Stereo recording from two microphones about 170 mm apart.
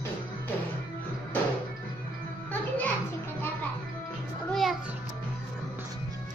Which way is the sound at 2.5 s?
10° left (ahead or behind).